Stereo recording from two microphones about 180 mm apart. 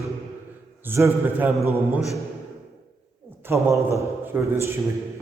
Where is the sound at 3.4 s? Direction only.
15° right (ahead or behind).